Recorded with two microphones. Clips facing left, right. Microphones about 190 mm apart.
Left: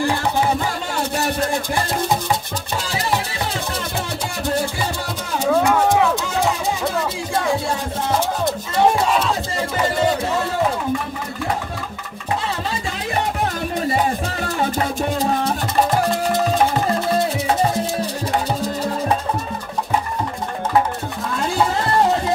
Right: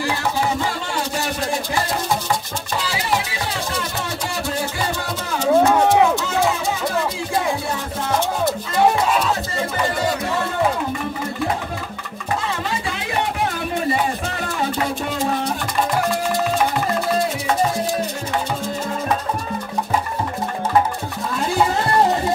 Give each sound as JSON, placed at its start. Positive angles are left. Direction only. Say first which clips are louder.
{"t": 5.5, "sound": "music", "louder": "right 2 dB", "side_deg": -20}